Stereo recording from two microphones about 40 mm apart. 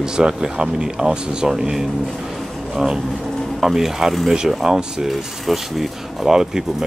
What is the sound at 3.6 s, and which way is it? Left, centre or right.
Speech, centre.